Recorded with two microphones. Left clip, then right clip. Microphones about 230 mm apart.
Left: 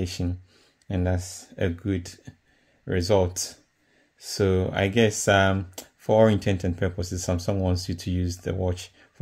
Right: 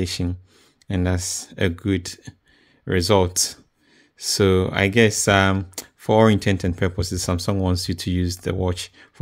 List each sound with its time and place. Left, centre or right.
0.0 s speech: right